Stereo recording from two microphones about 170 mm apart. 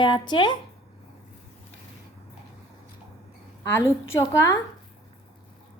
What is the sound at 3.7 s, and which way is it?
Speech, 15° left (ahead or behind).